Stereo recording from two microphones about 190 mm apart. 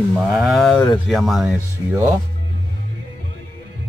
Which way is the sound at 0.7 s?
25° left (ahead or behind).